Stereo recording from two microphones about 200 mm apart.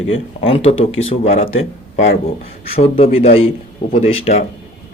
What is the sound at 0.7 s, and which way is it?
Speech, 85° left.